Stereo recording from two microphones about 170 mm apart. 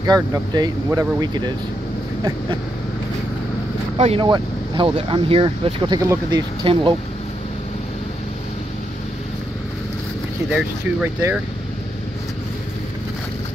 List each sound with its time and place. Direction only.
0.0 s speech: 25° right (ahead or behind)
4.0 s speech: 30° right (ahead or behind)
10.5 s speech: 10° right (ahead or behind)